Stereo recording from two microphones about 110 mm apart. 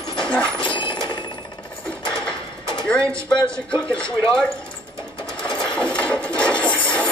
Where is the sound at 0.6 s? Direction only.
45° left (ahead or behind).